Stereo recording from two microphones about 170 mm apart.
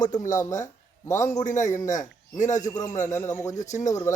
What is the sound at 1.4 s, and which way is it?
A man's voice, 45° left (ahead or behind).